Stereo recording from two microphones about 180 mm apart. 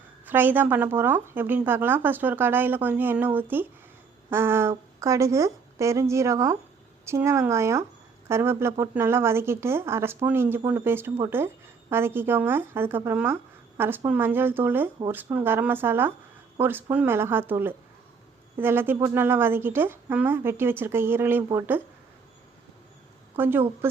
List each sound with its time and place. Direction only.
0.3 s speech: 10° right (ahead or behind)
23.4 s speech: 10° right (ahead or behind)